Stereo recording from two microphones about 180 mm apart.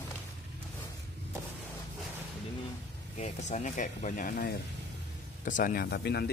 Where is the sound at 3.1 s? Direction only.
40° left (ahead or behind).